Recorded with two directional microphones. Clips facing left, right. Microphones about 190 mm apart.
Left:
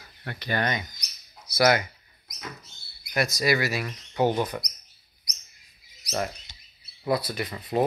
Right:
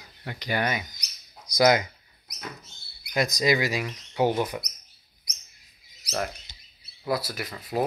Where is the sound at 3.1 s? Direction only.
15° right (ahead or behind).